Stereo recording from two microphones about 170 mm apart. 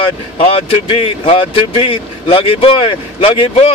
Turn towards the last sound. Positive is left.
turn(degrees=35)  # may be behind; listen again after turning